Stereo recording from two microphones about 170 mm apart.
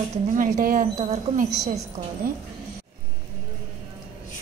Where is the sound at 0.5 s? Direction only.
55° right (ahead or behind).